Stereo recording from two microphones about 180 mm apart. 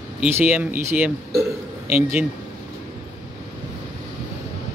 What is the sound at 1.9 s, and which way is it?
Speech, 35° left (ahead or behind).